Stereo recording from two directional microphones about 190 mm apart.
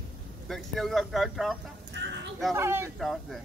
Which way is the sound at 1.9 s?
65° right (ahead or behind).